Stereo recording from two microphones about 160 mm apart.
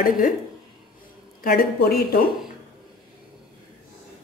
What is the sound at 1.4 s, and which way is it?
Speech, 65° left (ahead or behind).